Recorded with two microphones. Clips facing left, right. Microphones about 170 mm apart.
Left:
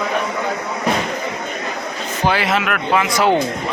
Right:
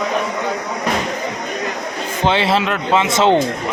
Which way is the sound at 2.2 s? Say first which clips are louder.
Right 2 dB; 25° right (ahead or behind).